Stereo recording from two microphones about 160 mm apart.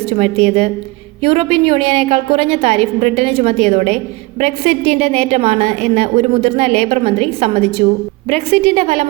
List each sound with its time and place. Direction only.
0.1 s a woman's voice: 40° right (ahead or behind)